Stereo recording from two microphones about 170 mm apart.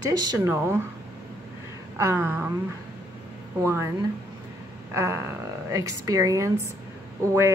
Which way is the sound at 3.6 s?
15° right (ahead or behind).